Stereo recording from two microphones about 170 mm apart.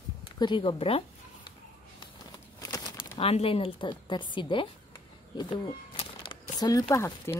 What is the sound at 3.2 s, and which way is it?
A woman's voice, 35° left (ahead or behind).